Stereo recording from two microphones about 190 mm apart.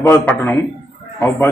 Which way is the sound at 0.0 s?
10° left (ahead or behind).